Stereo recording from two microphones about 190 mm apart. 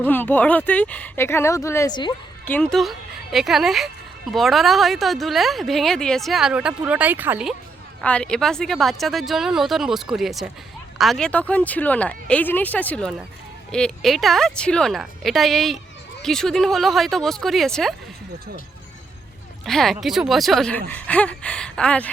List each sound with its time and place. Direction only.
0.0 s speech: 10° left (ahead or behind)
2.4 s a woman's voice: 10° left (ahead or behind); by 7.5 s 10° right (ahead or behind)
8.0 s a woman's voice: 5° left (ahead or behind)
19.6 s a woman's voice: centre (ahead or behind)